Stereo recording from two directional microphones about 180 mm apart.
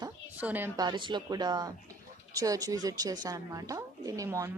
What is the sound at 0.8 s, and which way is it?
A woman's voice, 25° right (ahead or behind).